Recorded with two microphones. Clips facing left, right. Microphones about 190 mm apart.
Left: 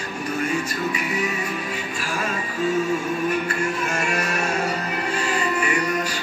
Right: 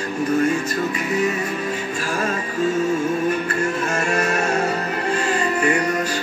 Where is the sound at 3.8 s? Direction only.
45° right (ahead or behind).